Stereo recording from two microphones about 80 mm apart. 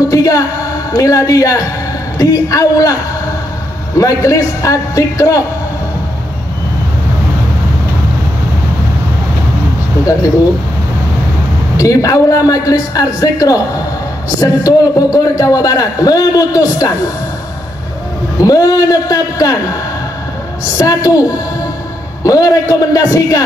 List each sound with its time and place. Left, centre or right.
0.1 s a woman's voice: left
4.0 s a man's voice: left
11.7 s a man's voice: left
18.4 s a man's voice: left
20.7 s a man's voice: left